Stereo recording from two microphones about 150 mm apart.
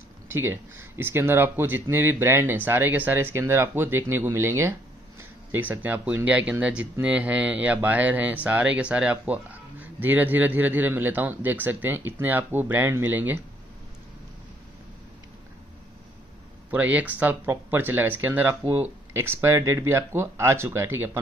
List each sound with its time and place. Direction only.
0.3 s speech: 15° right (ahead or behind)
16.7 s speech: 10° right (ahead or behind)